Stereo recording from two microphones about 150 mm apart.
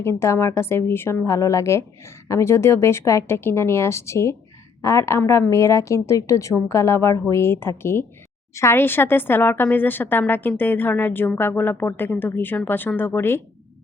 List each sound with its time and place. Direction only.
0.0 s a woman's voice: 20° left (ahead or behind)